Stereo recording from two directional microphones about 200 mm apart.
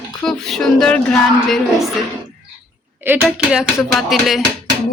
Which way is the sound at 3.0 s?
10° right (ahead or behind).